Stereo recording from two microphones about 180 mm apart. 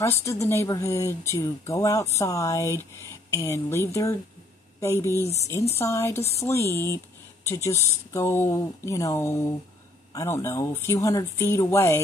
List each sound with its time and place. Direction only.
0.0 s speech: 15° left (ahead or behind)